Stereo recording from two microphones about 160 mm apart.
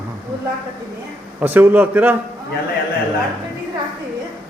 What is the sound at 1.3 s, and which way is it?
Speech, 10° right (ahead or behind).